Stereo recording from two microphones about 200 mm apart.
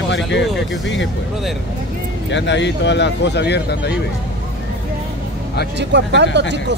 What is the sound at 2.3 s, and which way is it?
Speech, 60° left (ahead or behind).